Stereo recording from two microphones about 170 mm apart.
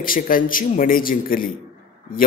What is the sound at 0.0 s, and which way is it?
A man's voice, 55° left (ahead or behind).